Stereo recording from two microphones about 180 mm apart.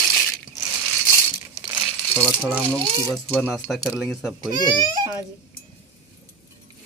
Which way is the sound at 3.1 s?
5° left (ahead or behind).